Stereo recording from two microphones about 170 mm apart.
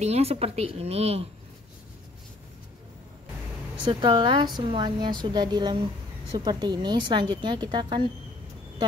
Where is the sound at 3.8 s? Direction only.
30° right (ahead or behind).